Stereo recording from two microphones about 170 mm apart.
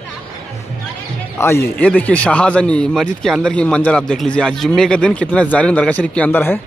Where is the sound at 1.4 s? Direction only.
15° left (ahead or behind).